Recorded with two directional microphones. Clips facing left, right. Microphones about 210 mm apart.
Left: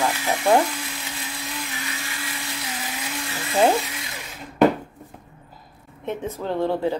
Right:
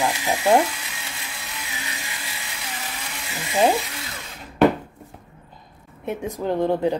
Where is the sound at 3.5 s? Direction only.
10° right (ahead or behind).